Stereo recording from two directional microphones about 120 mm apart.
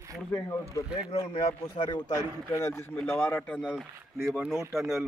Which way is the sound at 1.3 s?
50° left (ahead or behind).